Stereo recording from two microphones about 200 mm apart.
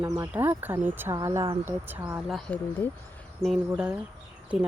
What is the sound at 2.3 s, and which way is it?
Speech, 5° left (ahead or behind).